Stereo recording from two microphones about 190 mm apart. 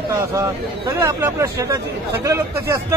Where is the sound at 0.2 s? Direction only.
15° right (ahead or behind).